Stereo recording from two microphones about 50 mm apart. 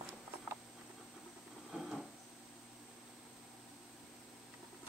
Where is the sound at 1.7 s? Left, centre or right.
Right.